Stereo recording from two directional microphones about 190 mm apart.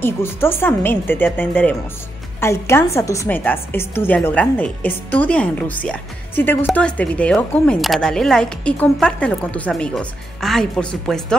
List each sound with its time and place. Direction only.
0.0 s a woman's voice: 10° left (ahead or behind)